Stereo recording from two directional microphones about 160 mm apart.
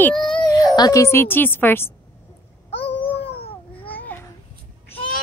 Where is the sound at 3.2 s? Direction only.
90° left.